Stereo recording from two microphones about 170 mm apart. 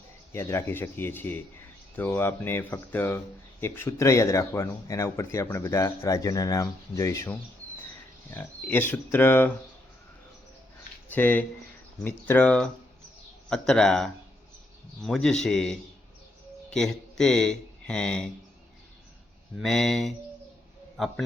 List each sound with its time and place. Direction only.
0.3 s speech: 15° left (ahead or behind)
11.1 s speech: 10° left (ahead or behind)
19.5 s speech: centre (ahead or behind)